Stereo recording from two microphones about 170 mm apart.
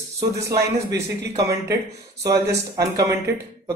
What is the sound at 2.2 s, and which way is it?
Speech, 20° right (ahead or behind).